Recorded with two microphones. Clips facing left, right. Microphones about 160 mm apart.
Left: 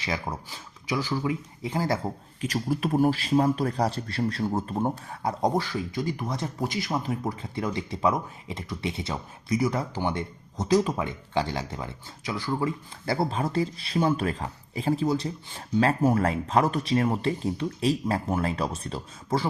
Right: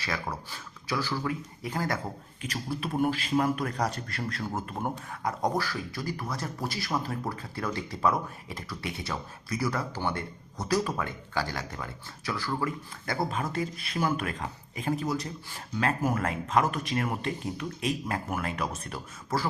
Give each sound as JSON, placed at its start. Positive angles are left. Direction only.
{"t": 0.0, "sound": "a man's voice", "side_deg": 20}
{"t": 2.4, "sound": "a man's voice", "side_deg": 40}